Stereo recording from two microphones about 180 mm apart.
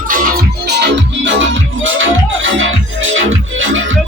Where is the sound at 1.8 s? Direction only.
90° right.